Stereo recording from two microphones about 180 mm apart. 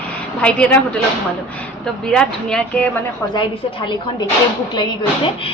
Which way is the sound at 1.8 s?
5° left (ahead or behind).